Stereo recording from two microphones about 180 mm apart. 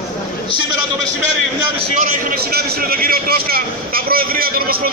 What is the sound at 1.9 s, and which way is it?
A man's voice, 45° right (ahead or behind).